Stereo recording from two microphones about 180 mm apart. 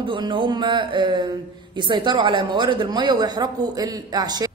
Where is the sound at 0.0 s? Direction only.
25° right (ahead or behind).